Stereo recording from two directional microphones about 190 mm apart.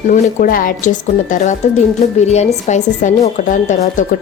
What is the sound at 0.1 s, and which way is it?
A woman's voice, 45° left (ahead or behind).